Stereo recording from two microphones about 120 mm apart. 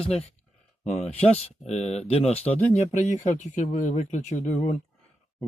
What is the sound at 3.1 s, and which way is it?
Speech, 90° left.